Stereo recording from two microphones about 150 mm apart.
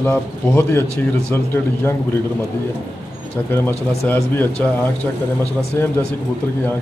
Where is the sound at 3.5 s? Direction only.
15° left (ahead or behind).